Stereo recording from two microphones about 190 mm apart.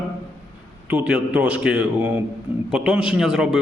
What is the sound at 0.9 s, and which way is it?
A man's voice, 5° right (ahead or behind).